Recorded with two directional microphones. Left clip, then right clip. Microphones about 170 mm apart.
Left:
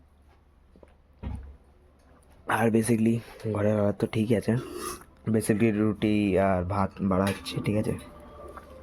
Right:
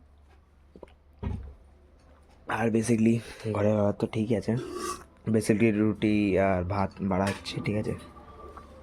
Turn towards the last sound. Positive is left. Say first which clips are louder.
# left 2 dB
turn(degrees=10)  # may be behind; listen again after turning